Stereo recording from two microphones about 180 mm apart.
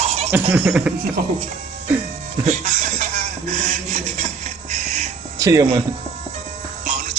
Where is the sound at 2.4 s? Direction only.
40° right (ahead or behind).